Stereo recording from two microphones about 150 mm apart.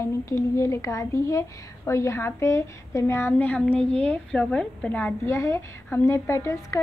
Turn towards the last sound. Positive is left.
turn(degrees=20)  # may be behind; listen again after turning